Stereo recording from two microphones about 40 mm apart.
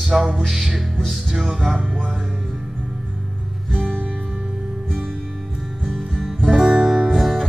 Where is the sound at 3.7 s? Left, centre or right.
Centre.